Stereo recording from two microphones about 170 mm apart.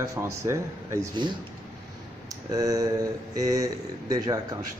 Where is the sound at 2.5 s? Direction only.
20° right (ahead or behind).